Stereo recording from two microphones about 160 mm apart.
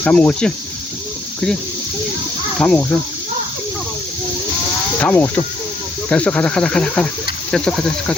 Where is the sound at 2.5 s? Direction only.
10° left (ahead or behind).